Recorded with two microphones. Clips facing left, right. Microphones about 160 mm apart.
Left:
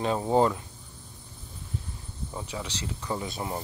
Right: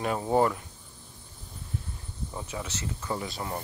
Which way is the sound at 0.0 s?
20° left (ahead or behind).